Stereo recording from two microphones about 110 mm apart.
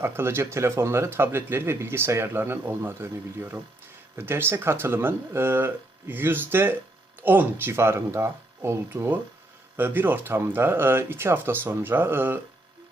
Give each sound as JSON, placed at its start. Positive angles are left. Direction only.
{"t": 0.0, "sound": "speech", "side_deg": -20}